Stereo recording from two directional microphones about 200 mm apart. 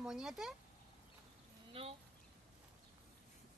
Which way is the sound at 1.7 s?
30° right (ahead or behind).